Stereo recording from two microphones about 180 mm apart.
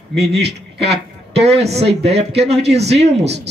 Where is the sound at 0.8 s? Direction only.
35° right (ahead or behind).